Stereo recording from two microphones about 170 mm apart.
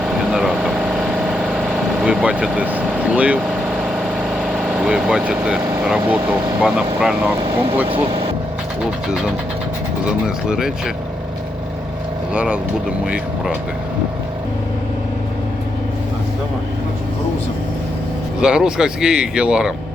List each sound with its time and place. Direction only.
0.0 s vehicle: 5° right (ahead or behind)
5.8 s speech: 5° right (ahead or behind)
7.9 s speech: 30° right (ahead or behind)
10.1 s speech: 5° right (ahead or behind)
12.3 s speech: 5° right (ahead or behind)
18.3 s speech: 5° right (ahead or behind)